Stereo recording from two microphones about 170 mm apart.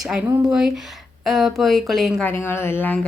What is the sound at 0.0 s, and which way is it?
Speech, 5° right (ahead or behind).